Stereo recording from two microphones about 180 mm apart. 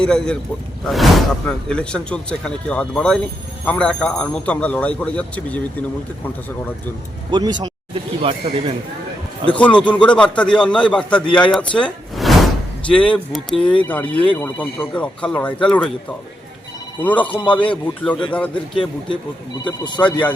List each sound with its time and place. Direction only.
0.0 s a man's voice: 5° left (ahead or behind)
7.3 s a man's voice: 25° right (ahead or behind)
9.6 s a man's voice: 5° left (ahead or behind)
17.0 s speech: 10° left (ahead or behind)
19.6 s speech: 25° left (ahead or behind)